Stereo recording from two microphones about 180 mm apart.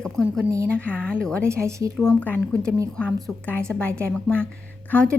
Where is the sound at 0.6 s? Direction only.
5° left (ahead or behind).